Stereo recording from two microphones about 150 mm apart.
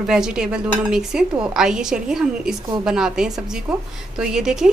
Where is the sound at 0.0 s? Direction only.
5° right (ahead or behind).